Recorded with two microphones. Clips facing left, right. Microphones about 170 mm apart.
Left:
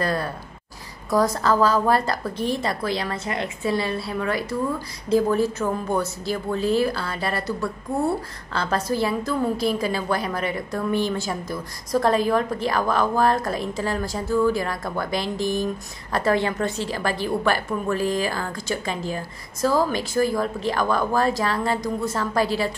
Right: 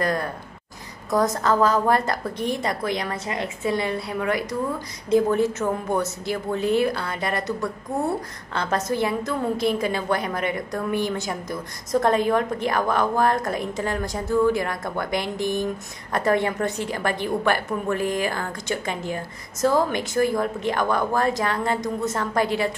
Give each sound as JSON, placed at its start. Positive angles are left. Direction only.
{"t": 0.0, "sound": "a woman's voice", "side_deg": -20}
{"t": 8.5, "sound": "a woman's voice", "side_deg": -20}